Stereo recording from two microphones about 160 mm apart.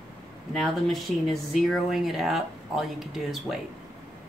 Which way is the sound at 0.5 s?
Centre (ahead or behind).